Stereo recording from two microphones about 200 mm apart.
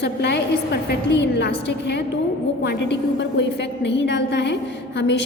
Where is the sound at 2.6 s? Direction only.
60° left (ahead or behind).